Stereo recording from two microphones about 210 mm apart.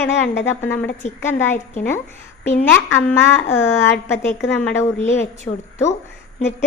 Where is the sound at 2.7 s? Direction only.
10° left (ahead or behind).